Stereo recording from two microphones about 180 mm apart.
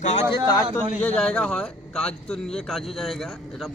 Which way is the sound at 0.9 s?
5° left (ahead or behind).